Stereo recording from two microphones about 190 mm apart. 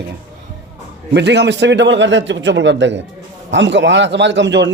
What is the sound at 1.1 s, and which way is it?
A man's voice, 65° right (ahead or behind).